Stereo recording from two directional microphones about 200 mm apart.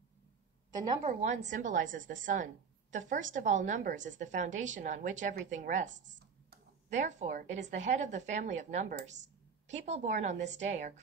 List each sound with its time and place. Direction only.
1.0 s a woman's voice: 35° right (ahead or behind)
5.9 s speech: 65° right (ahead or behind)
6.9 s a woman's voice: 35° right (ahead or behind)